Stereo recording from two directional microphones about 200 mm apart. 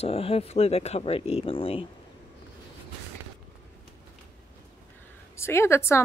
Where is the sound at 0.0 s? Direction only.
30° left (ahead or behind).